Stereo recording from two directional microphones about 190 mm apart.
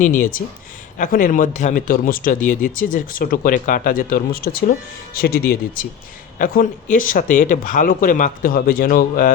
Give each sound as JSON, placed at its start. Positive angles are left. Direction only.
{"t": 0.0, "sound": "a man's voice", "side_deg": 45}